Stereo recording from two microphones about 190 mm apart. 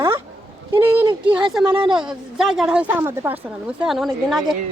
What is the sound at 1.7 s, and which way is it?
Speech, 25° right (ahead or behind).